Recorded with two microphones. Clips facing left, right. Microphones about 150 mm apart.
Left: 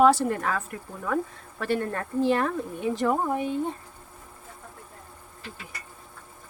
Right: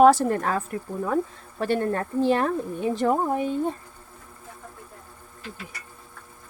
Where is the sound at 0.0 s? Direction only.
45° right (ahead or behind).